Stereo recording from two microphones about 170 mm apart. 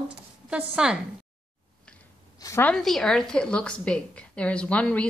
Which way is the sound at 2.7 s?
Centre (ahead or behind).